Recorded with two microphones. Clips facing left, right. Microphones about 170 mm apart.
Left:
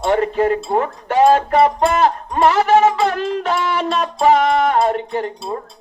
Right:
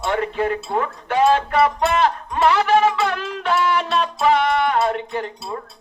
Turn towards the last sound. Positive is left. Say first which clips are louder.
# left 4 dB
turn(degrees=35)  # may be behind; listen again after turning